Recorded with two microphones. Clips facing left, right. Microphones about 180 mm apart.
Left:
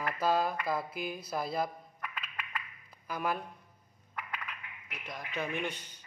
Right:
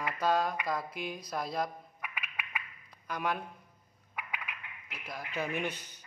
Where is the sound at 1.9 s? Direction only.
10° right (ahead or behind).